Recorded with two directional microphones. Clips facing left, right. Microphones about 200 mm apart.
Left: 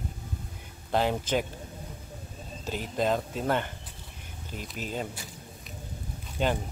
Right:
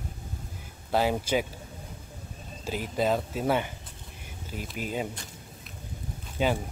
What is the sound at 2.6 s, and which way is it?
Speech, 10° right (ahead or behind).